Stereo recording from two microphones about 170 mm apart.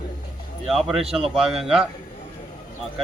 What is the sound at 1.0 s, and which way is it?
Speech, 35° right (ahead or behind).